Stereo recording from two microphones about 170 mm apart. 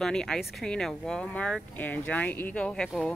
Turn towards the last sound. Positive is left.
turn(degrees=5)  # may be behind; listen again after turning